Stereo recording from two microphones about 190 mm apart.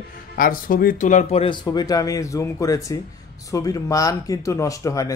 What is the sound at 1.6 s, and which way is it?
Speech, 20° left (ahead or behind).